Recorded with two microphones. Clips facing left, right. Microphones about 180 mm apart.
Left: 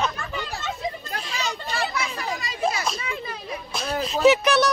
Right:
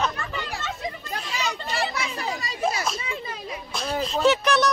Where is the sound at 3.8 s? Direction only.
5° left (ahead or behind).